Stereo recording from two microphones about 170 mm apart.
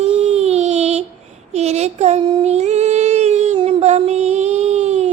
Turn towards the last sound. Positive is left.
turn(degrees=-40)  # may be behind; listen again after turning